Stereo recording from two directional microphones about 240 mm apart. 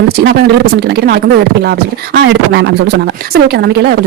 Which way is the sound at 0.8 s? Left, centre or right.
Right.